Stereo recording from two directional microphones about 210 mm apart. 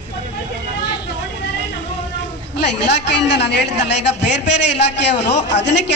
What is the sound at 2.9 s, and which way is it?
A woman's voice, 55° left (ahead or behind).